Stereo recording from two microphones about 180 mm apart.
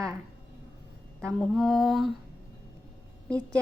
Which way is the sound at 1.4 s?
Centre (ahead or behind).